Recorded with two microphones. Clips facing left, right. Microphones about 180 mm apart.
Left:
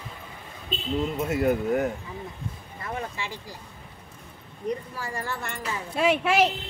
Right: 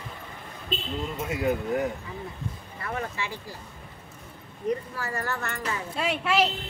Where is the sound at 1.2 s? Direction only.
50° left (ahead or behind).